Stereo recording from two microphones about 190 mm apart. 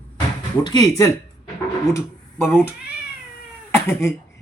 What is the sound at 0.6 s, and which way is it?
Speech, 20° left (ahead or behind).